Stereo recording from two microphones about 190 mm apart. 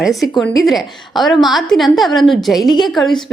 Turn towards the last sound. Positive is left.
turn(degrees=0)  # may be behind; listen again after turning